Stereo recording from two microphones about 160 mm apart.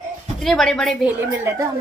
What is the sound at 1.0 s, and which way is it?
Speech, 15° right (ahead or behind).